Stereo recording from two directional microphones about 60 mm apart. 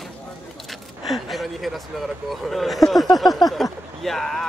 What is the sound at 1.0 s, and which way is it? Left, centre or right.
Speech, centre.